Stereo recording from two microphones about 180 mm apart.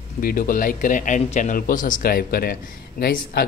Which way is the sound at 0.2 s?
50° left (ahead or behind).